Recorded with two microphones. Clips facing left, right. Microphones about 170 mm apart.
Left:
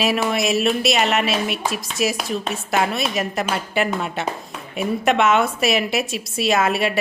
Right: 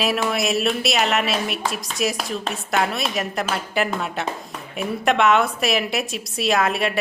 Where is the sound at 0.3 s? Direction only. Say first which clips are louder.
Left 2 dB; centre (ahead or behind).